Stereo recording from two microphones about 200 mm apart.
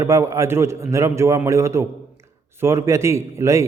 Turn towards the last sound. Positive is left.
turn(degrees=-15)  # may be behind; listen again after turning